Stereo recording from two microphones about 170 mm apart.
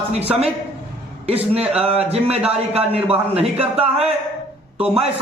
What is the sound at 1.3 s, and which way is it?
Speech, 35° right (ahead or behind).